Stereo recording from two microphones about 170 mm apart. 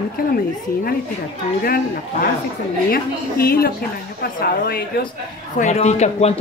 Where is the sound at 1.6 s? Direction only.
60° left (ahead or behind).